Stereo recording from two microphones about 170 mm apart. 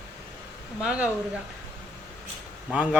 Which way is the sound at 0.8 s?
5° right (ahead or behind).